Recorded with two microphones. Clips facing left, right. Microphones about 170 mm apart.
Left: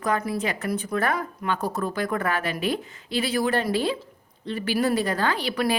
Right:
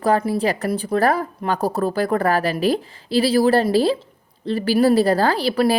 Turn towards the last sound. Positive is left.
turn(degrees=-35)  # may be behind; listen again after turning